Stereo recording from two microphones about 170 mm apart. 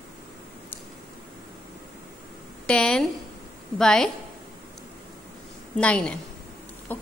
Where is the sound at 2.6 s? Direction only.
5° left (ahead or behind).